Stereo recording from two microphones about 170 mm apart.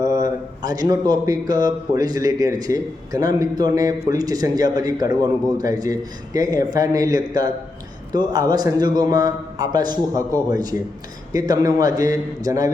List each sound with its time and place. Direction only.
0.0 s speech: 20° right (ahead or behind)